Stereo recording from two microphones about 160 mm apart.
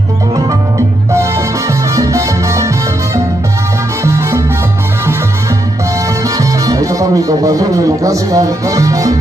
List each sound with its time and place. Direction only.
1.1 s salsa music: 20° right (ahead or behind)
4.0 s salsa music: 15° right (ahead or behind)
6.2 s music: 20° right (ahead or behind)